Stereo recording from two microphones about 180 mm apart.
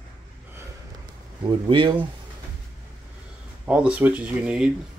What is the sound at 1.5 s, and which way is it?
Speech, 30° right (ahead or behind).